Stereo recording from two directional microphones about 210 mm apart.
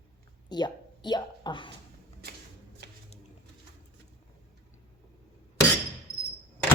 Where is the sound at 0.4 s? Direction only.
20° left (ahead or behind).